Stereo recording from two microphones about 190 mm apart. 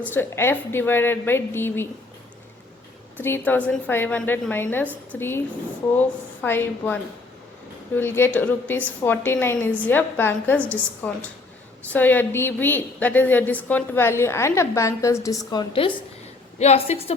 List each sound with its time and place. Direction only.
0.1 s a woman's voice: 10° left (ahead or behind)
3.2 s a woman's voice: 10° left (ahead or behind); by 17.2 s 30° left (ahead or behind)